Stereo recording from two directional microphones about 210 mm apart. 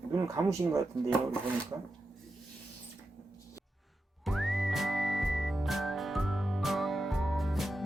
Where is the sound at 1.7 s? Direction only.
15° right (ahead or behind).